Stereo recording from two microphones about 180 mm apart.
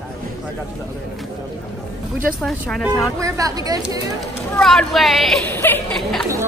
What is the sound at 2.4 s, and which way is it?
Speech, centre (ahead or behind).